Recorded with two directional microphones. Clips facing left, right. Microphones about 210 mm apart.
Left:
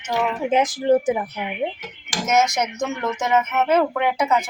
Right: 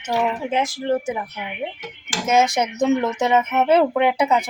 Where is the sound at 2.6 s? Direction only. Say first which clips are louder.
Right 5 dB; 20° right (ahead or behind).